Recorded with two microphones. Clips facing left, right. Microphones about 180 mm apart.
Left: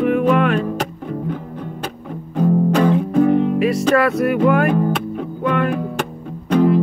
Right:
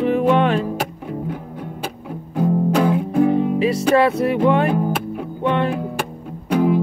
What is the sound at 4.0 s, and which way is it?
Music, 30° right (ahead or behind).